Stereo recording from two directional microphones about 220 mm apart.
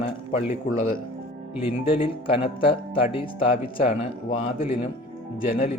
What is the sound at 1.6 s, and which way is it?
Speech, 25° left (ahead or behind).